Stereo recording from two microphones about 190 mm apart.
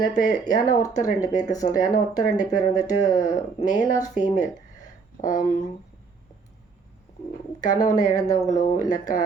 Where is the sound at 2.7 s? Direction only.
20° left (ahead or behind).